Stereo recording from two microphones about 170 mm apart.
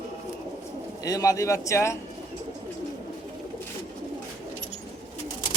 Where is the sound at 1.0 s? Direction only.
20° left (ahead or behind).